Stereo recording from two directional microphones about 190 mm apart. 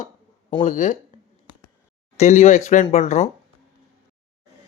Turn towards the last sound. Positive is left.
turn(degrees=35)  # may be behind; listen again after turning